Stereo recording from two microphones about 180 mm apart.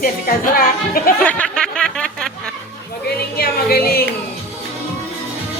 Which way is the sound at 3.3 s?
55° left (ahead or behind).